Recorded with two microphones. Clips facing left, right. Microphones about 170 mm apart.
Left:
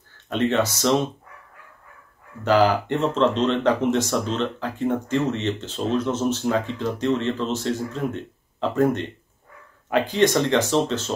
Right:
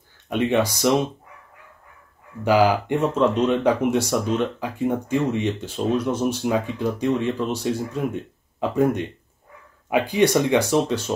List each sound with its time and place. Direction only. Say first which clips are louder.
0.3 s speech: right 1 dB; 10° right (ahead or behind)
2.4 s speech: right 1 dB; 10° right (ahead or behind)